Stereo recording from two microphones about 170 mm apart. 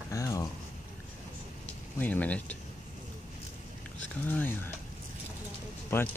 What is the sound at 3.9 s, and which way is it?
Speech, 10° left (ahead or behind).